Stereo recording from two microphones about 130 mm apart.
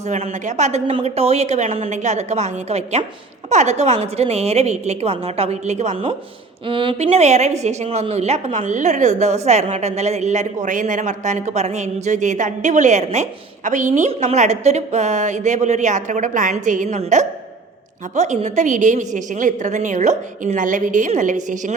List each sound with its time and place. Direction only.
0.0 s a woman's voice: 65° right (ahead or behind)
6.7 s a woman's voice: 40° right (ahead or behind)
7.0 s a woman's voice: 55° right (ahead or behind)
13.7 s a woman's voice: 75° right (ahead or behind)
14.1 s a woman's voice: 60° right (ahead or behind); by 17.0 s 75° right (ahead or behind)
17.0 s a woman's voice: 65° right (ahead or behind)